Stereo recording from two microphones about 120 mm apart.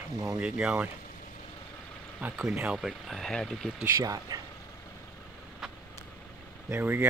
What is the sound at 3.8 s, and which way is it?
Speech, 25° right (ahead or behind).